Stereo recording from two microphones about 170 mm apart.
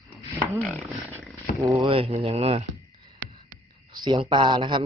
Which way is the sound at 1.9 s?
35° right (ahead or behind).